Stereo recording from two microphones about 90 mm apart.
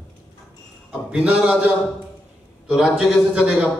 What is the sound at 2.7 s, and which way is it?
A man's voice, 5° right (ahead or behind).